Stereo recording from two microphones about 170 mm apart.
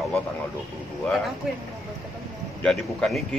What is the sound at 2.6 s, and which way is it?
Speech, 5° left (ahead or behind).